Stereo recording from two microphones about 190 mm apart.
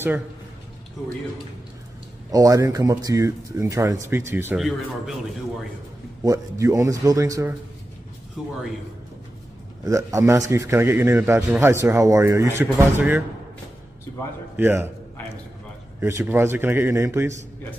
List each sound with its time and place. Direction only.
2.3 s a man's voice: 20° right (ahead or behind)
4.6 s speech: centre (ahead or behind)
6.2 s a man's voice: 15° right (ahead or behind)
8.4 s speech: 5° right (ahead or behind)
9.8 s a man's voice: 15° right (ahead or behind)
14.6 s a man's voice: 10° right (ahead or behind)
16.0 s a man's voice: 15° right (ahead or behind)